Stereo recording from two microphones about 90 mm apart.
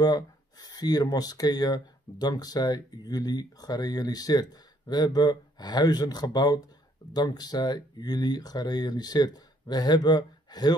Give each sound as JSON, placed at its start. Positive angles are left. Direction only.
{"t": 0.0, "sound": "speech", "side_deg": 50}